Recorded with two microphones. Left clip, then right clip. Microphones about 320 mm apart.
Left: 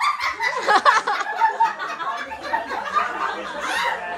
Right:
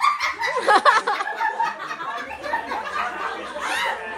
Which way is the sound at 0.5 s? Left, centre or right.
Centre.